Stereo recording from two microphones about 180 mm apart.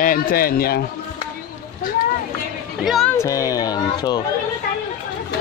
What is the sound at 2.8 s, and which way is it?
Speech, centre (ahead or behind).